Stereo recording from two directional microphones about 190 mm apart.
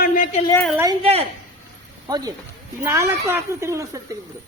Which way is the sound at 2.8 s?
15° right (ahead or behind).